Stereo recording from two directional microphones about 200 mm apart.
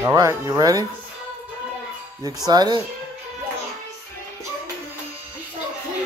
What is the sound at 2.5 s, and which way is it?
Speech, 20° right (ahead or behind).